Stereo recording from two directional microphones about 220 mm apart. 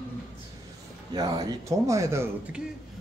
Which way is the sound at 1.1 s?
20° right (ahead or behind).